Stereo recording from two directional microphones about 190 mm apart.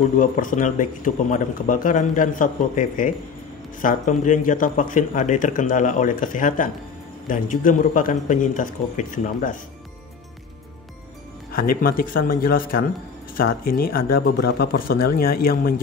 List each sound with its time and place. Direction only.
0.2 s speech: 45° left (ahead or behind)
11.5 s speech: 50° left (ahead or behind)